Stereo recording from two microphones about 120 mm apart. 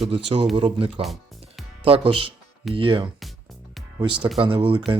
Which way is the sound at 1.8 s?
50° right (ahead or behind).